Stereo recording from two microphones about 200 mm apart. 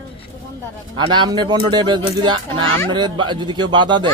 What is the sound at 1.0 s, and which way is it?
Speech, 20° right (ahead or behind).